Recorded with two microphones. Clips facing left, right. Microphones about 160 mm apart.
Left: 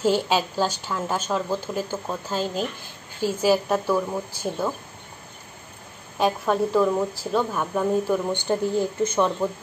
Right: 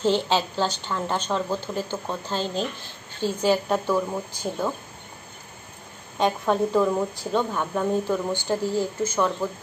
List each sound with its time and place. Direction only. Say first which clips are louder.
0.0 s a woman's voice: left 1 dB; 10° left (ahead or behind)
6.1 s a woman's voice: even; 5° left (ahead or behind)
8.3 s speech: left 2 dB; 20° left (ahead or behind)